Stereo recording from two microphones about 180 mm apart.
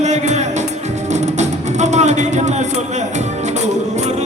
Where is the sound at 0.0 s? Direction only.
40° right (ahead or behind).